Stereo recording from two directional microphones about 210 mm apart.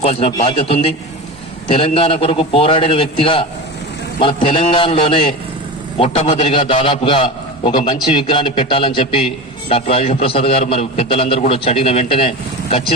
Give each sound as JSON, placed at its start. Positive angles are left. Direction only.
{"t": 0.0, "sound": "a man's voice", "side_deg": 25}